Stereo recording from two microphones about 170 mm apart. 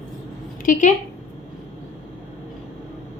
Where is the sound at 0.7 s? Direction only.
50° left (ahead or behind).